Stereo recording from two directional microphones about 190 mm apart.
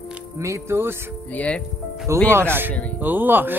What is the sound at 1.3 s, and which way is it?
Speech, 5° left (ahead or behind).